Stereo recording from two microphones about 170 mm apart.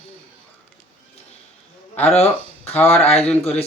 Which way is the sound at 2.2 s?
40° left (ahead or behind).